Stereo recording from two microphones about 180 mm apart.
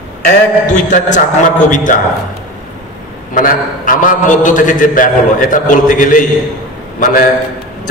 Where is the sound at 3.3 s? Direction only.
50° left (ahead or behind).